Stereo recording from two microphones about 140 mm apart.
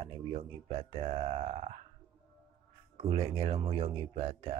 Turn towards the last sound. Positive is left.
turn(degrees=-45)  # may be behind; listen again after turning